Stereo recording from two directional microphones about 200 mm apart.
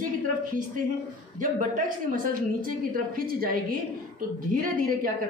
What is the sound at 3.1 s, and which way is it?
A woman's voice, 45° right (ahead or behind).